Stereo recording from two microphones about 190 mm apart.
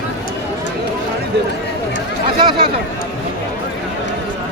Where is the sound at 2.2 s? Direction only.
25° right (ahead or behind).